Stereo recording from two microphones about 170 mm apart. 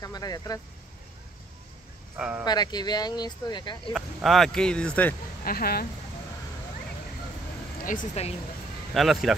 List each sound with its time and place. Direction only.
0.0 s speech: 25° left (ahead or behind)
2.1 s speech: 5° right (ahead or behind)
2.4 s speech: 25° left (ahead or behind)
3.9 s speech: centre (ahead or behind)
5.4 s speech: 60° left (ahead or behind)
7.8 s speech: 50° left (ahead or behind)
8.9 s speech: centre (ahead or behind)